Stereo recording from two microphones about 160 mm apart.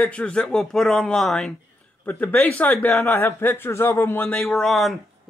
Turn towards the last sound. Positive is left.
turn(degrees=0)  # may be behind; listen again after turning